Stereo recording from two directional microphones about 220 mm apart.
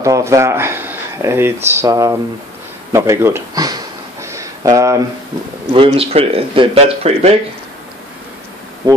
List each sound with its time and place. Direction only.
0.0 s speech: 15° right (ahead or behind)
2.9 s a sound: 10° right (ahead or behind)
5.7 s speech: 25° right (ahead or behind)
8.8 s speech: 20° right (ahead or behind)